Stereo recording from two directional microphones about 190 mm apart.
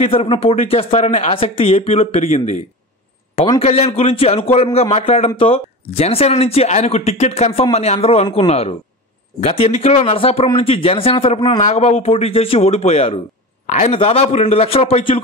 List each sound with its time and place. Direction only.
0.0 s speech: 30° left (ahead or behind)